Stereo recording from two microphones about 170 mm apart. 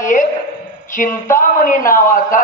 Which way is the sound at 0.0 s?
50° left (ahead or behind).